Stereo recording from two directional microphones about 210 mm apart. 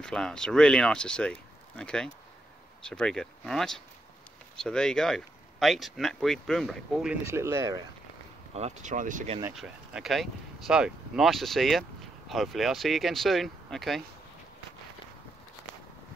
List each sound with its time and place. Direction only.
0.0 s speech: 5° left (ahead or behind)
7.2 s speech: 10° right (ahead or behind)
8.5 s speech: 30° right (ahead or behind)
9.6 s speech: centre (ahead or behind)